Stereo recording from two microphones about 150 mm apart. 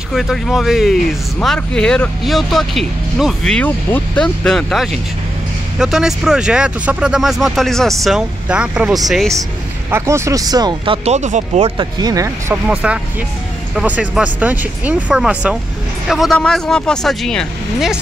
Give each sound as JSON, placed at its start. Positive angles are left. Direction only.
{"t": 0.1, "sound": "speech", "side_deg": 0}
{"t": 9.8, "sound": "speech", "side_deg": -15}
{"t": 11.1, "sound": "speech", "side_deg": -50}
{"t": 11.7, "sound": "speech", "side_deg": -30}
{"t": 12.6, "sound": "speech", "side_deg": -10}